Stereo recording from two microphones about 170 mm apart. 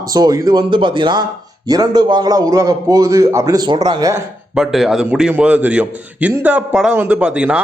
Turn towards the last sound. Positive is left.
turn(degrees=-5)  # may be behind; listen again after turning